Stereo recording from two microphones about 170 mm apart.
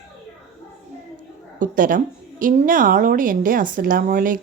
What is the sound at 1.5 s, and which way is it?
A woman's voice, 50° right (ahead or behind).